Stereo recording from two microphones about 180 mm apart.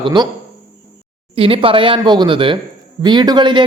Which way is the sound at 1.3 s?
30° right (ahead or behind).